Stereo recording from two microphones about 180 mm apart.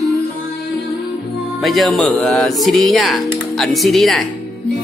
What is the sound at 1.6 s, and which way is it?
Speech, centre (ahead or behind).